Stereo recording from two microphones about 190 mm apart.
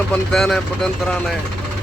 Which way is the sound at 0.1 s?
Centre (ahead or behind).